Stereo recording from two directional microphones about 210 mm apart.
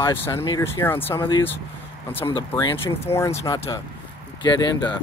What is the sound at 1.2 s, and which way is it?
Speech, 20° left (ahead or behind).